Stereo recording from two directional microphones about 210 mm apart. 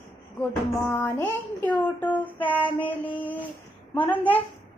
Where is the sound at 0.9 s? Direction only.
10° left (ahead or behind).